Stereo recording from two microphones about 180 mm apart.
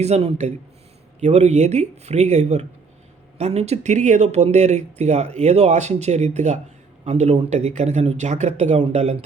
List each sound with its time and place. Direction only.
0.0 s speech: 35° right (ahead or behind)